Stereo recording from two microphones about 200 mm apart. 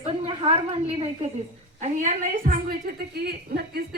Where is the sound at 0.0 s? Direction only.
30° right (ahead or behind).